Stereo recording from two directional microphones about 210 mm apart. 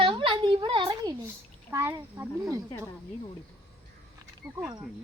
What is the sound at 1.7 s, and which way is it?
Speech, 10° right (ahead or behind).